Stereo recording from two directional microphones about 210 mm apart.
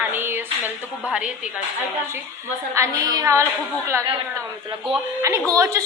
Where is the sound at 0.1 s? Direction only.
10° right (ahead or behind).